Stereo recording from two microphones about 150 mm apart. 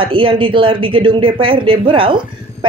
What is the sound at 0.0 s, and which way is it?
Speech, 35° right (ahead or behind).